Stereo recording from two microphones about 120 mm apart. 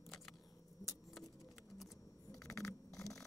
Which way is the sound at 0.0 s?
Centre (ahead or behind).